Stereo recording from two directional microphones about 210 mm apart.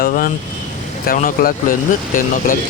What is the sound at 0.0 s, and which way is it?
Speech, 40° left (ahead or behind).